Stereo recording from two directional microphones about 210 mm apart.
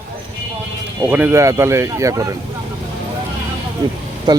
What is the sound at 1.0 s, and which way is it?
Speech, 10° right (ahead or behind).